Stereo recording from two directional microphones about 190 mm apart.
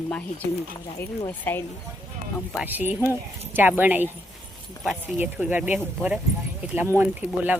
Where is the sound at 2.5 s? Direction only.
10° right (ahead or behind).